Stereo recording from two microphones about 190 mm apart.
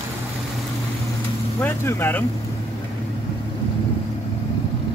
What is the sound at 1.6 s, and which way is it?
Speech, 10° left (ahead or behind).